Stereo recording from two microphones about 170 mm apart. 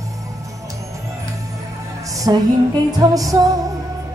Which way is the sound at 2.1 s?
20° right (ahead or behind).